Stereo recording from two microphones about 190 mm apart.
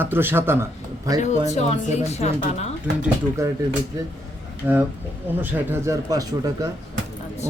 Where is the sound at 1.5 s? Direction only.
35° left (ahead or behind).